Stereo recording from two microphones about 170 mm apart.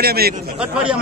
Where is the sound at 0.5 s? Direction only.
5° right (ahead or behind).